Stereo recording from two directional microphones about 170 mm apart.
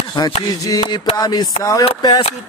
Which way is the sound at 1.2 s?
25° left (ahead or behind).